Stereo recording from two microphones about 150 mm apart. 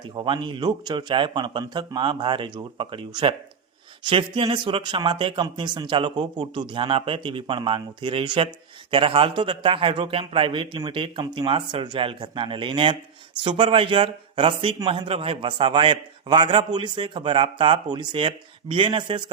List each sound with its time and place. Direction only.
0.0 s speech: 30° right (ahead or behind)